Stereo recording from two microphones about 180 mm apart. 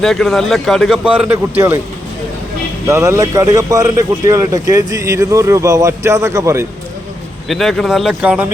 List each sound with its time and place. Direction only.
0.0 s a man's voice: centre (ahead or behind)
2.8 s speech: 15° right (ahead or behind)
7.4 s a man's voice: centre (ahead or behind)